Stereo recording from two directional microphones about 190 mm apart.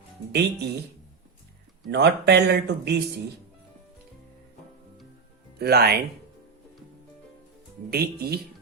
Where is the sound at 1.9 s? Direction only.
60° right (ahead or behind).